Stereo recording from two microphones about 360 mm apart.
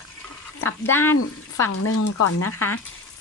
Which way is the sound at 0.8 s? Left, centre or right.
Centre.